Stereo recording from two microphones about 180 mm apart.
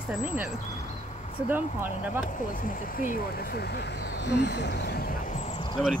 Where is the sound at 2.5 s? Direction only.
50° left (ahead or behind); by 5.8 s 30° left (ahead or behind).